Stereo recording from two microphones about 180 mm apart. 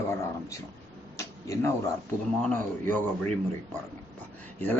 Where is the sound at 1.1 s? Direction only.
15° left (ahead or behind).